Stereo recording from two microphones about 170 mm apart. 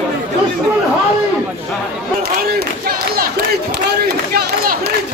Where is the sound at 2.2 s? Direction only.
65° right (ahead or behind).